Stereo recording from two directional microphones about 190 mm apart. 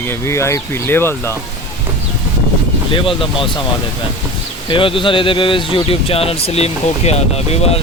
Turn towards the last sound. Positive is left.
turn(degrees=35)  # may be behind; listen again after turning